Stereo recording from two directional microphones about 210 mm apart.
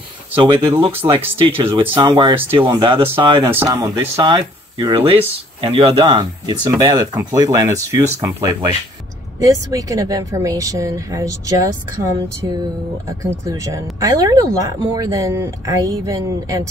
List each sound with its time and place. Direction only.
0.4 s speech: 20° right (ahead or behind)
13.2 s speech: 15° right (ahead or behind)